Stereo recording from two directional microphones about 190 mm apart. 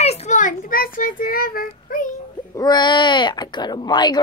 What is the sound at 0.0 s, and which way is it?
Child singing, 35° left (ahead or behind).